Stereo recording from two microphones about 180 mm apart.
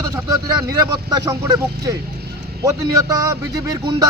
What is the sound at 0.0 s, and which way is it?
A man's voice, 20° right (ahead or behind).